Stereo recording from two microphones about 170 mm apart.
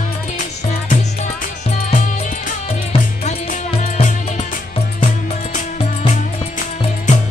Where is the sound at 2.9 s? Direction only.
35° left (ahead or behind).